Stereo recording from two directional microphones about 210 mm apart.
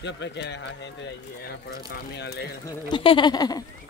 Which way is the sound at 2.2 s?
50° left (ahead or behind).